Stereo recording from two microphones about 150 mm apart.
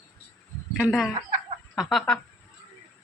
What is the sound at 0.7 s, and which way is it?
Speech, centre (ahead or behind).